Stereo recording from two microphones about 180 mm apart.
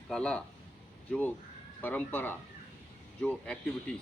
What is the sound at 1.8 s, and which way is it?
Speech, 10° left (ahead or behind).